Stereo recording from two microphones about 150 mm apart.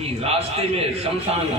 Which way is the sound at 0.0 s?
40° right (ahead or behind).